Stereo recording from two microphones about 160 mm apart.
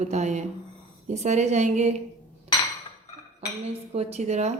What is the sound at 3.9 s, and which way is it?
Speech, 40° right (ahead or behind).